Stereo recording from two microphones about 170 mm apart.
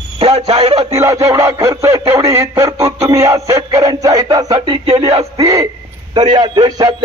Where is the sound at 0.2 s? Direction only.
40° right (ahead or behind).